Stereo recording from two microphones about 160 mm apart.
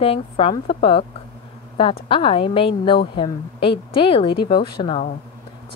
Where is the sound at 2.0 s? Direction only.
35° left (ahead or behind).